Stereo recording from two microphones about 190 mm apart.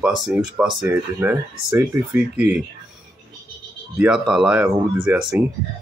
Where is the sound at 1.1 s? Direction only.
10° right (ahead or behind).